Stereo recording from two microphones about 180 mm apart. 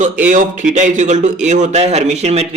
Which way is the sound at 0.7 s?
45° right (ahead or behind).